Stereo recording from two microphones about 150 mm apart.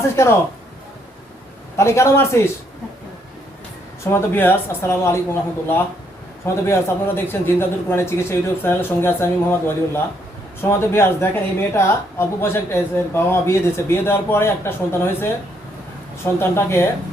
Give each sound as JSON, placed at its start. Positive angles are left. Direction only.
{"t": 1.7, "sound": "a man's voice", "side_deg": 20}
{"t": 4.0, "sound": "a man's voice", "side_deg": 15}
{"t": 16.4, "sound": "a man's voice", "side_deg": 15}